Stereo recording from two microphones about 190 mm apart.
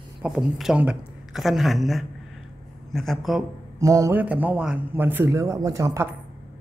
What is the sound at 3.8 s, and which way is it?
Speech, 15° right (ahead or behind).